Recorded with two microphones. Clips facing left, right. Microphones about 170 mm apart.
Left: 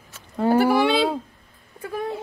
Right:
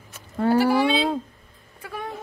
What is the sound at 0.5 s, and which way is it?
Speech, 55° left (ahead or behind).